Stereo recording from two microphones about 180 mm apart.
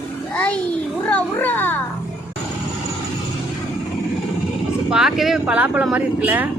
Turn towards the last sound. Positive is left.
turn(degrees=-10)  # may be behind; listen again after turning